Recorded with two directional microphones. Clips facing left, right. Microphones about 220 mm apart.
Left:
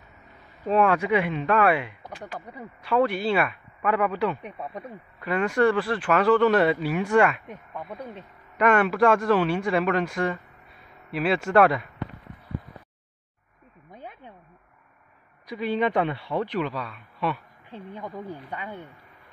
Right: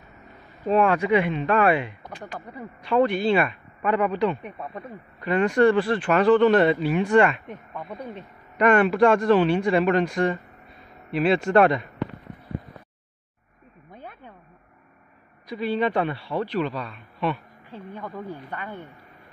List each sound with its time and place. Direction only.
0.7 s speech: 5° left (ahead or behind)
13.9 s a sound: 15° left (ahead or behind)
15.4 s a man's voice: 15° left (ahead or behind)